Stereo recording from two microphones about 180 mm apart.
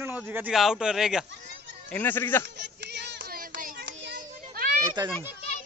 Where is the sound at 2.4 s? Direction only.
70° right (ahead or behind).